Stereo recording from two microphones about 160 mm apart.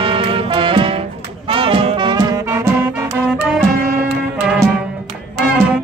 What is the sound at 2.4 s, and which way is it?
Music, 15° right (ahead or behind).